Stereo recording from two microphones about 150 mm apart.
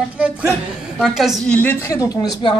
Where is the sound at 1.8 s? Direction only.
20° left (ahead or behind).